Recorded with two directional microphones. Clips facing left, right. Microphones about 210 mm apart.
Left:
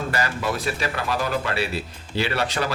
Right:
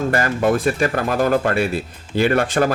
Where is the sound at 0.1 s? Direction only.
50° right (ahead or behind).